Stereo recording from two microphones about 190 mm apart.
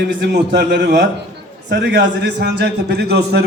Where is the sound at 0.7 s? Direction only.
65° right (ahead or behind).